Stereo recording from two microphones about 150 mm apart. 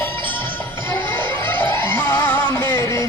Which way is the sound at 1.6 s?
15° left (ahead or behind).